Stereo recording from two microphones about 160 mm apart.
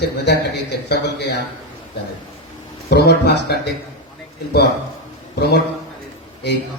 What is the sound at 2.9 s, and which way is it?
Speech, 90° left.